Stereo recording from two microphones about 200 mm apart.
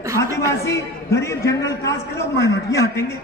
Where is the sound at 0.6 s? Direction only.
15° left (ahead or behind).